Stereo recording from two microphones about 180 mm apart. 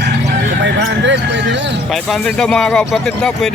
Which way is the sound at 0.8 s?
80° right.